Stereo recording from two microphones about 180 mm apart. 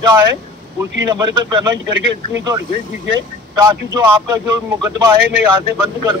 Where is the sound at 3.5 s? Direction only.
20° right (ahead or behind).